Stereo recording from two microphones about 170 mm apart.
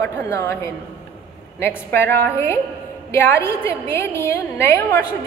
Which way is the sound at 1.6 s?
10° left (ahead or behind).